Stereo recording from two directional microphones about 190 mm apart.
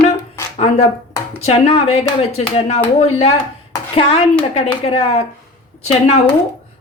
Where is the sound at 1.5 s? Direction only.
35° left (ahead or behind).